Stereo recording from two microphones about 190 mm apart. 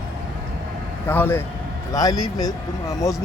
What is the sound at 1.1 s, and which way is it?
Speech, 10° left (ahead or behind).